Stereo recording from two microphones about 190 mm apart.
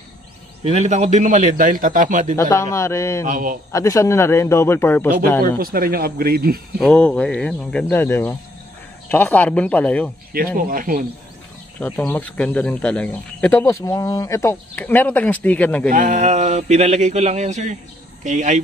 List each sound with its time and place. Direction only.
0.7 s speech: 35° right (ahead or behind)
2.3 s speech: 15° left (ahead or behind)
3.3 s speech: 45° right (ahead or behind)
3.7 s speech: 15° left (ahead or behind)
5.4 s speech: 50° right (ahead or behind)
6.8 s speech: 5° left (ahead or behind)
10.3 s speech: 50° right (ahead or behind)
11.8 s speech: 10° left (ahead or behind)
15.9 s speech: 45° right (ahead or behind)